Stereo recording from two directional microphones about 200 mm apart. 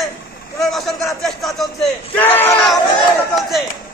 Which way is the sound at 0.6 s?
Centre (ahead or behind).